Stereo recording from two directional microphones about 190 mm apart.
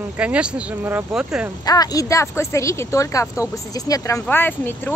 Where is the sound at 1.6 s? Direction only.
20° left (ahead or behind).